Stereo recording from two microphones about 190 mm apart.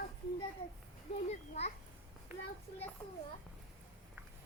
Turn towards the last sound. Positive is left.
turn(degrees=5)  # may be behind; listen again after turning